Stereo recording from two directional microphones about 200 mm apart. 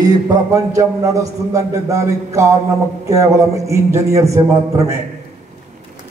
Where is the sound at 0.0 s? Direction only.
20° right (ahead or behind).